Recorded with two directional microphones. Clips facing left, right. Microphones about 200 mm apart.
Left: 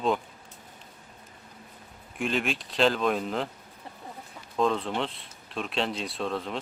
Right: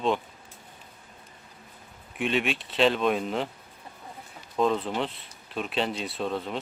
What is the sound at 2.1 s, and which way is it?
Speech, centre (ahead or behind).